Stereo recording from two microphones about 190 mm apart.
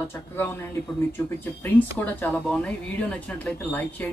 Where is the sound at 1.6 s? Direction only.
10° left (ahead or behind).